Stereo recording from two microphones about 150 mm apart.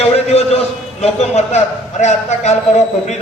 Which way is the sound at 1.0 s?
45° left (ahead or behind).